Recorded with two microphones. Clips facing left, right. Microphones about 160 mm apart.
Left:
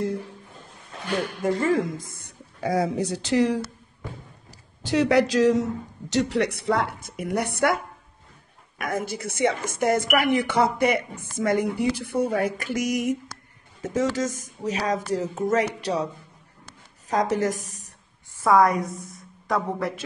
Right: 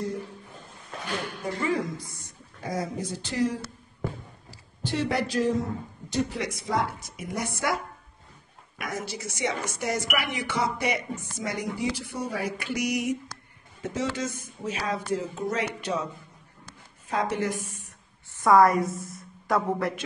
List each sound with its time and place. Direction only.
1.4 s a woman's voice: 45° left (ahead or behind)
2.6 s a man's voice: 70° left (ahead or behind)
4.8 s a man's voice: 90° left; by 7.8 s 60° left (ahead or behind)
8.7 s a woman's voice: 50° left (ahead or behind)
17.1 s speech: 40° left (ahead or behind)
18.3 s a woman's voice: centre (ahead or behind)